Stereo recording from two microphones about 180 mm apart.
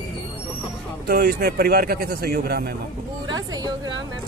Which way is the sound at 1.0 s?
60° right (ahead or behind).